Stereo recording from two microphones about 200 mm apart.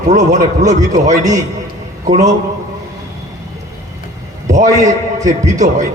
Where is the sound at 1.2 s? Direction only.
15° right (ahead or behind).